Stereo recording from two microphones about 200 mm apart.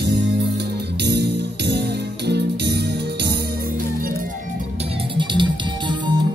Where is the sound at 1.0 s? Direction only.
55° right (ahead or behind).